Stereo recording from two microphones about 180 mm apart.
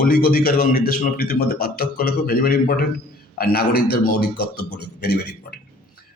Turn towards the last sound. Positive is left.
turn(degrees=60)  # may be behind; listen again after turning